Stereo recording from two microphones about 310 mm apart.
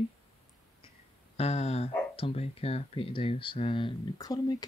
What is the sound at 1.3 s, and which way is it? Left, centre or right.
Speech, centre.